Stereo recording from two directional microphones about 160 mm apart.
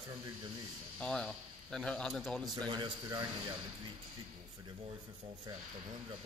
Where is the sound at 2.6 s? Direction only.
30° right (ahead or behind).